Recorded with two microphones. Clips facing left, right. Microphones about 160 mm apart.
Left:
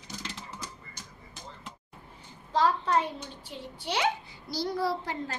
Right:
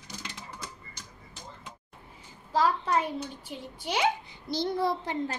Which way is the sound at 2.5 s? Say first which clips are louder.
Even; 10° right (ahead or behind).